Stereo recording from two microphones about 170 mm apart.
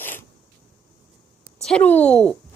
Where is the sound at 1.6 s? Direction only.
5° left (ahead or behind).